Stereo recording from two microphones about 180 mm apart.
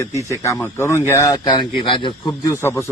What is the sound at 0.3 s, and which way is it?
Speech, 15° left (ahead or behind).